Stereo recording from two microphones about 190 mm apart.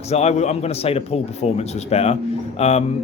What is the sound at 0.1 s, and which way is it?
A man's voice, 35° left (ahead or behind).